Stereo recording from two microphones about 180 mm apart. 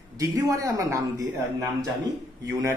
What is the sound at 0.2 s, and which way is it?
A man's voice, 20° right (ahead or behind).